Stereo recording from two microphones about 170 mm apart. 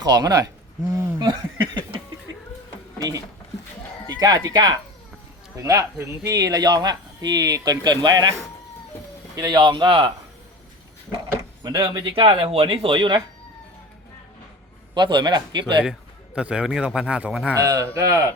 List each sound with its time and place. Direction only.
0.0 s speech: 20° right (ahead or behind)
4.1 s speech: 20° right (ahead or behind)
11.6 s speech: 25° right (ahead or behind)
14.9 s speech: 25° right (ahead or behind)
15.8 s a man's voice: 5° right (ahead or behind)
17.6 s speech: 20° right (ahead or behind)